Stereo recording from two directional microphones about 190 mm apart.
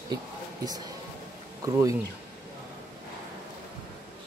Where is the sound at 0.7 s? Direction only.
20° right (ahead or behind).